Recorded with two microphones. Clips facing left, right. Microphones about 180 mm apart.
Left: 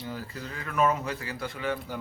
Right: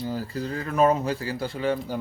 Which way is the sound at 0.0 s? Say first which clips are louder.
Right 8 dB; 35° right (ahead or behind).